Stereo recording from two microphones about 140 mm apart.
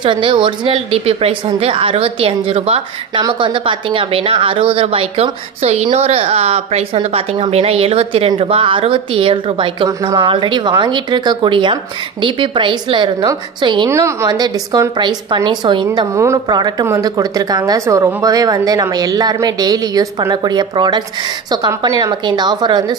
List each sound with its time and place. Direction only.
0.0 s a woman's voice: 35° right (ahead or behind)
13.8 s a woman's voice: 20° right (ahead or behind)